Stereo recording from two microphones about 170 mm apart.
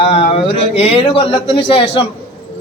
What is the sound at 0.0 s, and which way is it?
A man's voice, 35° left (ahead or behind).